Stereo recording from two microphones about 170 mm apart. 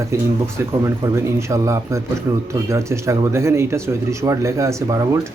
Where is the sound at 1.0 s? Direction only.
15° right (ahead or behind).